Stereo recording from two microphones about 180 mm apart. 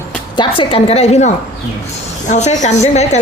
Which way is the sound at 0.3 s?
30° left (ahead or behind).